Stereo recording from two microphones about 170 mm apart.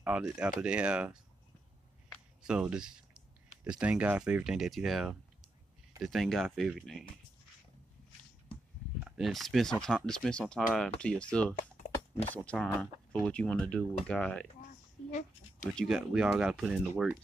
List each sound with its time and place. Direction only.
0.0 s speech: 5° right (ahead or behind)
2.4 s speech: 5° right (ahead or behind)
9.0 s speech: 5° right (ahead or behind)
15.0 s speech: 45° left (ahead or behind)
15.7 s speech: centre (ahead or behind)